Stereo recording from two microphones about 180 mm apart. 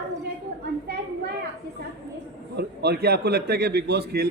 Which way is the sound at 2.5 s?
65° right (ahead or behind).